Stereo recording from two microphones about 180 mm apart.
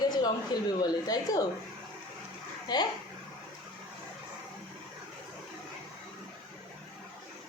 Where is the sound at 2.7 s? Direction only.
20° left (ahead or behind).